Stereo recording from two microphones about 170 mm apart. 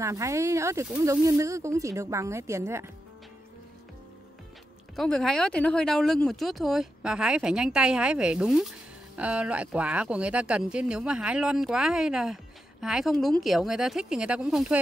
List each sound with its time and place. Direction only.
0.0 s a woman's voice: 20° right (ahead or behind)
1.4 s a woman's voice: 20° right (ahead or behind)
4.9 s speech: 5° left (ahead or behind)